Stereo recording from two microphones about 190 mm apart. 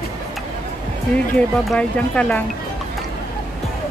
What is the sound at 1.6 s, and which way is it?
Speech, 5° left (ahead or behind).